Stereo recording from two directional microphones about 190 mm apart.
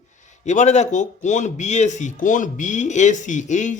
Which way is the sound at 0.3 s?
40° left (ahead or behind).